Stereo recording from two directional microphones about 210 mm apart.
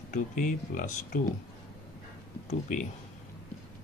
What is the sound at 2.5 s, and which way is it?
Speech, 35° left (ahead or behind).